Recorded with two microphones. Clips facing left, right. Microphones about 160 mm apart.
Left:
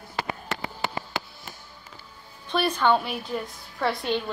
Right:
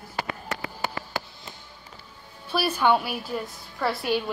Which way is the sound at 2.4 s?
5° right (ahead or behind).